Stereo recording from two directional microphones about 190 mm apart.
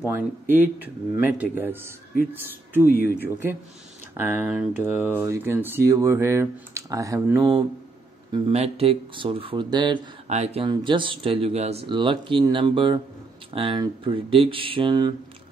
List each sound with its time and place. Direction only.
0.0 s speech: 10° right (ahead or behind)
8.5 s speech: 30° right (ahead or behind)
10.2 s speech: 35° right (ahead or behind)